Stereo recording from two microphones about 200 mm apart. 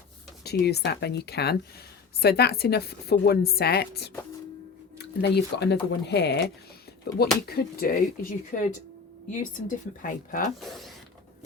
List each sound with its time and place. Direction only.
0.4 s a woman's voice: 55° left (ahead or behind)
5.2 s a woman's voice: 55° left (ahead or behind)
10.6 s speech: centre (ahead or behind)